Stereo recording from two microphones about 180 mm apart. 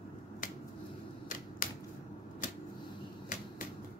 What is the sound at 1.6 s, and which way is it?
Finger snapping, 50° left (ahead or behind).